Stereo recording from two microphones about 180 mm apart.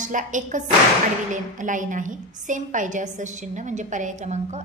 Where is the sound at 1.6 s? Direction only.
45° right (ahead or behind).